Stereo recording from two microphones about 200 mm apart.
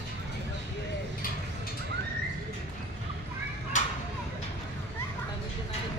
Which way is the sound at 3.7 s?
40° left (ahead or behind).